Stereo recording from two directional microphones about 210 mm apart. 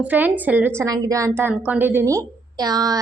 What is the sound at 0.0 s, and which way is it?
A woman's voice, 10° right (ahead or behind).